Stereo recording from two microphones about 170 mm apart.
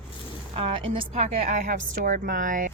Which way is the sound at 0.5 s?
30° right (ahead or behind).